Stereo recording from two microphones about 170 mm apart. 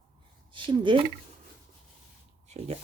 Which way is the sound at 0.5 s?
30° right (ahead or behind).